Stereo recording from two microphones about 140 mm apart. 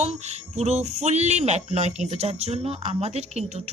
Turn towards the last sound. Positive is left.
turn(degrees=-50)  # may be behind; listen again after turning